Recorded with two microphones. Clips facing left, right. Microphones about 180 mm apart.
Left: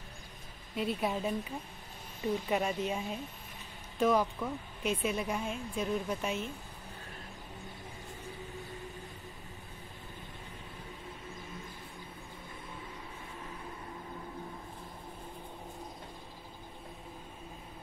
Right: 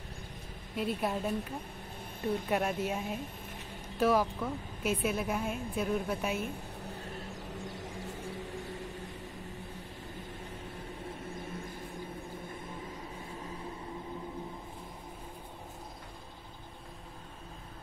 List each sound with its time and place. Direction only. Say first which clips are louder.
0.7 s speech: even; centre (ahead or behind)
2.3 s speech: right 1 dB; 5° right (ahead or behind)
7.6 s a sound: right 6 dB; 90° right